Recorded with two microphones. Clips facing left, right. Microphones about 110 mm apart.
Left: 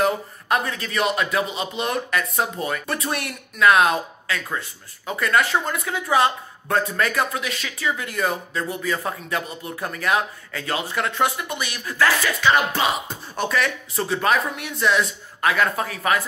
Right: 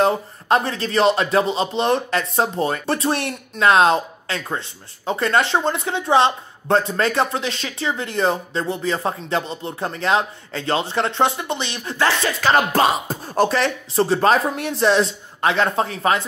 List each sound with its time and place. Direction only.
0.0 s speech: 30° right (ahead or behind)
12.4 s speech: 40° right (ahead or behind)